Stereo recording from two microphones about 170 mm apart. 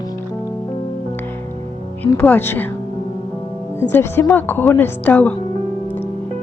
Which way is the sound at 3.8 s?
15° left (ahead or behind).